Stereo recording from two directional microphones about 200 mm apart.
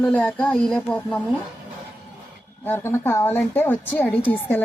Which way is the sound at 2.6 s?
10° left (ahead or behind).